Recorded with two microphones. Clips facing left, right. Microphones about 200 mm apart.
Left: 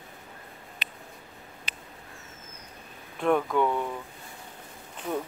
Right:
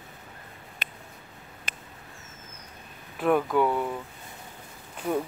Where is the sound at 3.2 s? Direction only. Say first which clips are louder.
Right 1 dB; 5° right (ahead or behind).